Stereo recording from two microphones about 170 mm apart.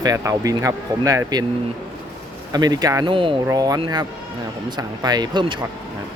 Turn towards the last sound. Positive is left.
turn(degrees=-25)  # may be behind; listen again after turning